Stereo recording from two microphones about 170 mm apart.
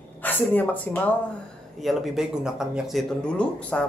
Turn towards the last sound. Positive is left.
turn(degrees=5)  # may be behind; listen again after turning